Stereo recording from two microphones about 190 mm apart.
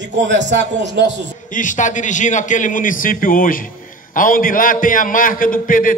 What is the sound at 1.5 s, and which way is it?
A man's voice, 40° left (ahead or behind).